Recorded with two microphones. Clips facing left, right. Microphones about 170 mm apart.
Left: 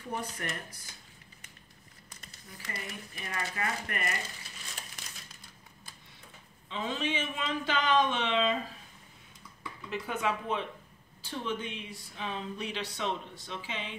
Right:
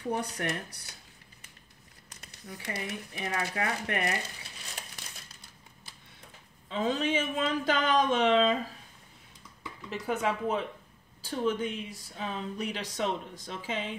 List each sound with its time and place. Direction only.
0.0 s speech: 70° right (ahead or behind)
2.0 s speech: 70° right (ahead or behind)
6.7 s speech: 45° right (ahead or behind)
9.8 s speech: 35° right (ahead or behind)